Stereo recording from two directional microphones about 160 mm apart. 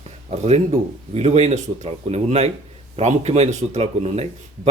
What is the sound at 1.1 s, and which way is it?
Speech, 40° right (ahead or behind).